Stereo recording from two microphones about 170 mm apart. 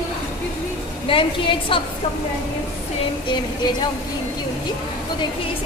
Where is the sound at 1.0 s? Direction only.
30° left (ahead or behind).